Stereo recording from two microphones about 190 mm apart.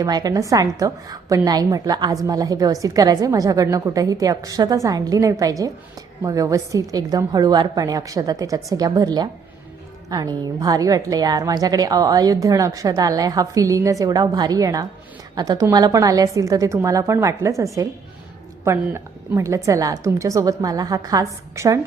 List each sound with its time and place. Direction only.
0.0 s a woman's voice: 20° right (ahead or behind)